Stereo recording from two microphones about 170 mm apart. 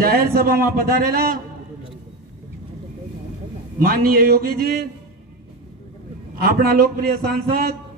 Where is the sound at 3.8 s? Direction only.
55° right (ahead or behind).